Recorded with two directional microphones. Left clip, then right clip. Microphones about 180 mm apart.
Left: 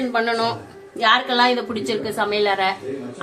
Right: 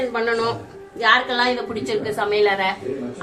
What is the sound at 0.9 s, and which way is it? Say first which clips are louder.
A woman's voice: even; 65° left (ahead or behind).